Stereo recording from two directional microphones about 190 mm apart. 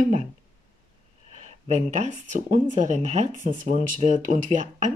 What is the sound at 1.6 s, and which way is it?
Speech, 35° right (ahead or behind).